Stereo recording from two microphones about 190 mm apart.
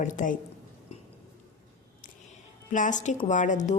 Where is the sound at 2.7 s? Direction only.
40° left (ahead or behind).